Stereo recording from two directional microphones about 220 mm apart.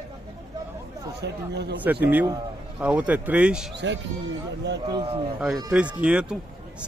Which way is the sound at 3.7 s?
55° right (ahead or behind).